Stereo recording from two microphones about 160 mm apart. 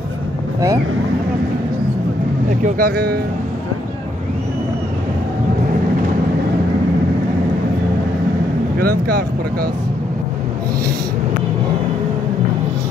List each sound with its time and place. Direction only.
2.6 s speech: 75° right (ahead or behind)
8.7 s speech: 70° right (ahead or behind)